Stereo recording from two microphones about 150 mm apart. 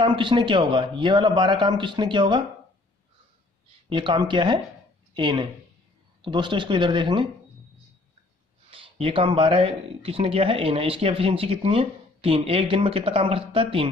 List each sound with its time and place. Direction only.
0.0 s speech: 35° right (ahead or behind)
3.9 s speech: 30° right (ahead or behind)
8.6 s speech: 35° right (ahead or behind)